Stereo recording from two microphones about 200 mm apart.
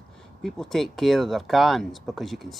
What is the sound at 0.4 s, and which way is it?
Speech, centre (ahead or behind).